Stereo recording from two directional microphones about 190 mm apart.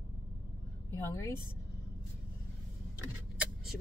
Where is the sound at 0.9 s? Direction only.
15° left (ahead or behind).